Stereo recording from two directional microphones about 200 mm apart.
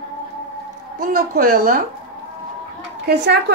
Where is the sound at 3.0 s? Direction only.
55° right (ahead or behind).